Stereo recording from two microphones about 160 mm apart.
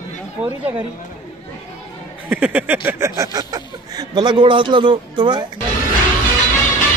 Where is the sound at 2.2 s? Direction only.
10° right (ahead or behind); by 5.4 s 30° right (ahead or behind).